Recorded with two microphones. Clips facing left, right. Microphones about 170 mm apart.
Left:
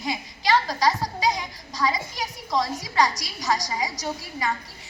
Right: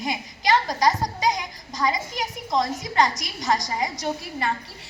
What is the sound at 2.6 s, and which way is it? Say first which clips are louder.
A woman's voice: even; 50° right (ahead or behind).